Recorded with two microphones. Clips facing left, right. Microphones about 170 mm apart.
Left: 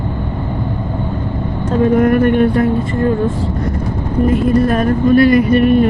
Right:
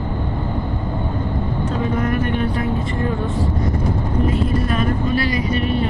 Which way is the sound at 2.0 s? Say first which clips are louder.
Left 10 dB; 55° left (ahead or behind).